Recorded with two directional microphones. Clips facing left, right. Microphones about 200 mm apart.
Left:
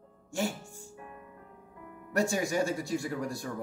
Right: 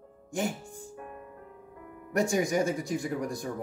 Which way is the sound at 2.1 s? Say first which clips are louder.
Right 3 dB; 15° right (ahead or behind).